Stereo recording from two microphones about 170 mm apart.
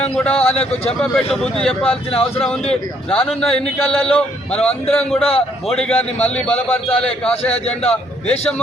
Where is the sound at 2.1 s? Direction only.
35° left (ahead or behind).